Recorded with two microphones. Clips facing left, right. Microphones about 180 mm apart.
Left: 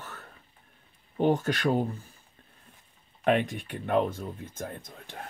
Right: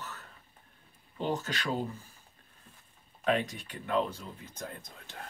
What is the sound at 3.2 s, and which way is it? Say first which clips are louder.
Speech: left 5 dB; 60° left (ahead or behind).